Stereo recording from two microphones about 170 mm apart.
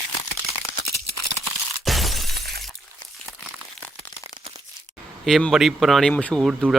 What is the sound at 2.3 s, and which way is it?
Shatter, 70° right (ahead or behind).